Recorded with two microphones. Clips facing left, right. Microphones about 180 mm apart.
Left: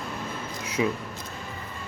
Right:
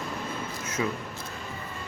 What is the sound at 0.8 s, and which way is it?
Speech, 15° left (ahead or behind).